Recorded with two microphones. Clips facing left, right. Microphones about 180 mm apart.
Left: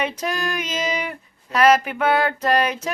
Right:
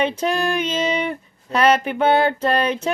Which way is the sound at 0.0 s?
30° right (ahead or behind).